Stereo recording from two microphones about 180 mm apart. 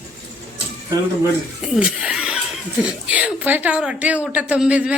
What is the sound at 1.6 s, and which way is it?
Speech, 5° right (ahead or behind).